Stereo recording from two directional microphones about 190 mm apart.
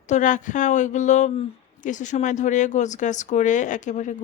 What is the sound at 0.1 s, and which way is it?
A woman's voice, 40° left (ahead or behind).